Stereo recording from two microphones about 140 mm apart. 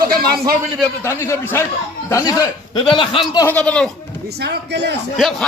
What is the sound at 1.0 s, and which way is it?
A man's voice, 20° left (ahead or behind).